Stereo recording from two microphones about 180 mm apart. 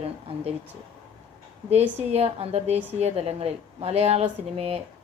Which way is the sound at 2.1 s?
35° right (ahead or behind).